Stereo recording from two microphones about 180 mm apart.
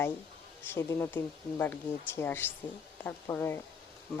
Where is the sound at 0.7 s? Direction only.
15° left (ahead or behind).